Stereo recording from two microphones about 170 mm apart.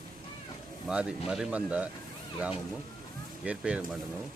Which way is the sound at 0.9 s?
5° right (ahead or behind).